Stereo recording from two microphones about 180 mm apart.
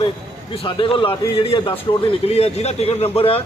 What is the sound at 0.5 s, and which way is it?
A man's voice, 30° left (ahead or behind).